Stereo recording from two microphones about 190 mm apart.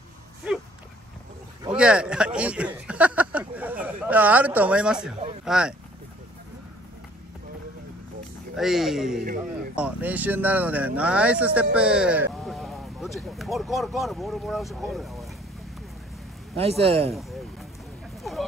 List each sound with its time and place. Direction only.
1.7 s speech: 5° right (ahead or behind)
8.5 s speech: centre (ahead or behind)
16.5 s a man's voice: 30° right (ahead or behind)